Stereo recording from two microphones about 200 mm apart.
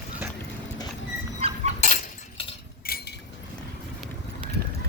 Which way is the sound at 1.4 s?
30° right (ahead or behind).